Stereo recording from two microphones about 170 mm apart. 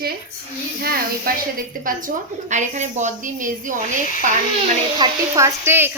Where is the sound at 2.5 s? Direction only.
45° right (ahead or behind).